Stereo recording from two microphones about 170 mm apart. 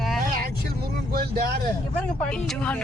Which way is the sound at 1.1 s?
60° right (ahead or behind).